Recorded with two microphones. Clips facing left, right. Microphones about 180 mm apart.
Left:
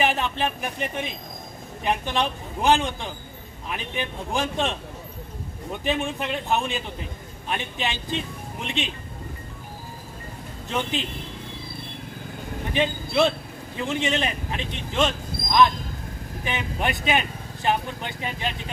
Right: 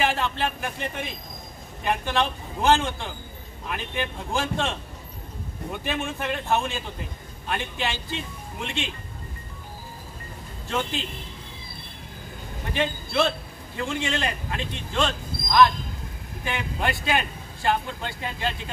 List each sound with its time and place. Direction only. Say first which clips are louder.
0.0 s speech: left 1 dB; 20° left (ahead or behind)
1.9 s speech: even; 15° left (ahead or behind)
5.9 s speech: left 3 dB; 15° left (ahead or behind)
10.7 s speech: left 1 dB; 20° left (ahead or behind)
12.7 s a man's voice: left 2 dB; 15° left (ahead or behind)